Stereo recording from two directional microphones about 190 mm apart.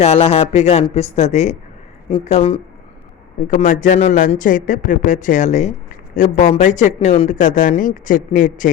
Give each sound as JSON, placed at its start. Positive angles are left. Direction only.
{"t": 0.0, "sound": "speech", "side_deg": 30}